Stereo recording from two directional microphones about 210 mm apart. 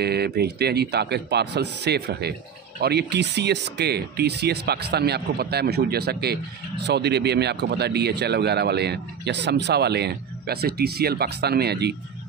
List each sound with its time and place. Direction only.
0.0 s speech: 50° right (ahead or behind)